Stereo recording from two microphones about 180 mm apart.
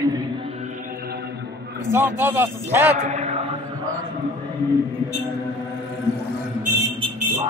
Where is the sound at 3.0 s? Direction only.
40° right (ahead or behind).